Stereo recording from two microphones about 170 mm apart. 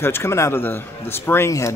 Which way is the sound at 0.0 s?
15° left (ahead or behind).